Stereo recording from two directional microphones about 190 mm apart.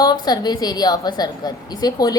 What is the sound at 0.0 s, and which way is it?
A woman's voice, 20° left (ahead or behind).